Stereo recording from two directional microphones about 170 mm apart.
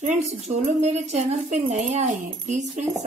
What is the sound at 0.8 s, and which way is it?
Speech, 40° right (ahead or behind).